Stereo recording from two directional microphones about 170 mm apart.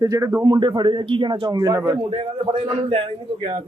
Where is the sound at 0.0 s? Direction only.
20° right (ahead or behind).